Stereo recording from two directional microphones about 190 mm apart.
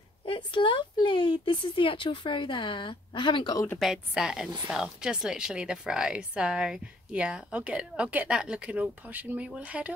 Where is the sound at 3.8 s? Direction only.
5° right (ahead or behind).